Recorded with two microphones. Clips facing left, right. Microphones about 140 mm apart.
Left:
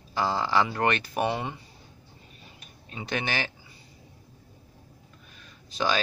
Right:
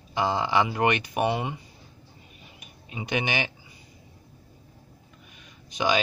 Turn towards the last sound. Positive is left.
turn(degrees=-15)  # may be behind; listen again after turning